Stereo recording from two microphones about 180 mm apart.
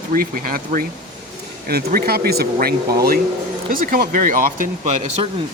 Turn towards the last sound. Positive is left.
turn(degrees=-45)  # may be behind; listen again after turning